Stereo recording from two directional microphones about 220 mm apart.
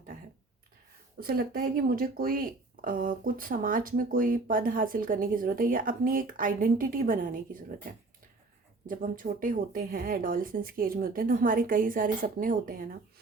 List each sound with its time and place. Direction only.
1.2 s speech: 40° right (ahead or behind)
8.9 s speech: 40° right (ahead or behind)